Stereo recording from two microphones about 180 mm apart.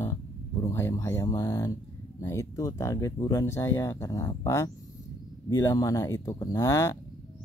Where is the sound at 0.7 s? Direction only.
15° left (ahead or behind).